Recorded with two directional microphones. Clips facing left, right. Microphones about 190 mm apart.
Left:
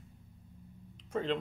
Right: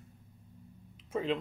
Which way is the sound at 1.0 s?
5° right (ahead or behind).